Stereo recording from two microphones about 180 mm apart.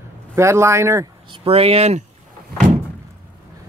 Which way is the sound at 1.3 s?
30° right (ahead or behind).